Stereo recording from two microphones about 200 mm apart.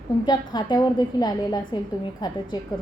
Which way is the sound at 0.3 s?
20° left (ahead or behind).